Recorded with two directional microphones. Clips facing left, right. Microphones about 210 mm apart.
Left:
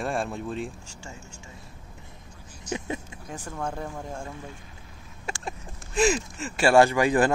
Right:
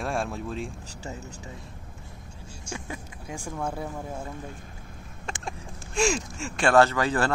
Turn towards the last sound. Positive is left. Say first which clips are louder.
# left 4 dB
turn(degrees=15)  # may be behind; listen again after turning